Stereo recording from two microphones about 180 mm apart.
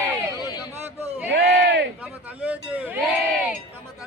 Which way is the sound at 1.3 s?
75° right (ahead or behind).